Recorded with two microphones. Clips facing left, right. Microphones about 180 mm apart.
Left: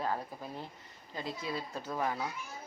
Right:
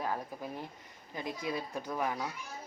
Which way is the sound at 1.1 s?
15° right (ahead or behind).